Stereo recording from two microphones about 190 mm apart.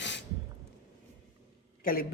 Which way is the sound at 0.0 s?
70° left (ahead or behind).